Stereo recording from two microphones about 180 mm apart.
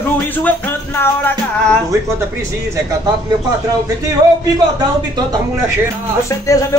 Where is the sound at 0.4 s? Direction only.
10° left (ahead or behind).